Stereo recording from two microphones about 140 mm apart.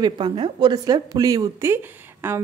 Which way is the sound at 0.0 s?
35° right (ahead or behind).